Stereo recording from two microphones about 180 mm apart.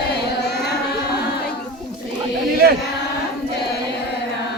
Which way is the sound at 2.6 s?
60° right (ahead or behind).